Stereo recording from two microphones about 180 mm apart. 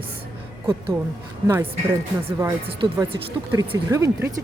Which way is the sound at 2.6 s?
30° right (ahead or behind).